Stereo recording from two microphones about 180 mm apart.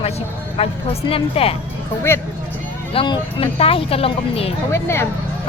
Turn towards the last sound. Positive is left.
turn(degrees=15)  # may be behind; listen again after turning